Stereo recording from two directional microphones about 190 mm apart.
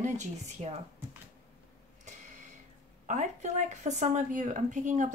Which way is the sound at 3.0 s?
35° right (ahead or behind).